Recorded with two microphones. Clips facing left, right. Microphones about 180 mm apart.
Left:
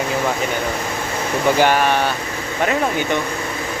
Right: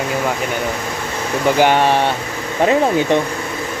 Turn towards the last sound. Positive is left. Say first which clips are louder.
# right 5 dB
turn(degrees=-30)  # may be behind; listen again after turning